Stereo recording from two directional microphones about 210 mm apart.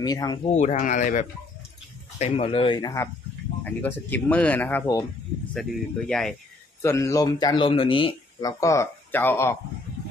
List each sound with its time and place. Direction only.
0.0 s speech: 20° left (ahead or behind)
0.5 s speech: 35° left (ahead or behind)
2.1 s speech: 25° left (ahead or behind); by 6.3 s centre (ahead or behind)
6.8 s speech: 15° left (ahead or behind)